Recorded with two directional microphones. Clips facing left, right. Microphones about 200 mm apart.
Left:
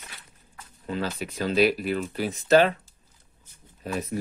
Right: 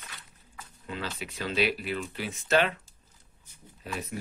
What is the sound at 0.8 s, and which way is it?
Speech, 40° left (ahead or behind).